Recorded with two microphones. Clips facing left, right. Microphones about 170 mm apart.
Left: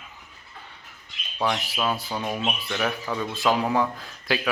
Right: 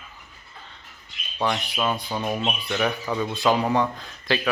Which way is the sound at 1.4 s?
5° left (ahead or behind).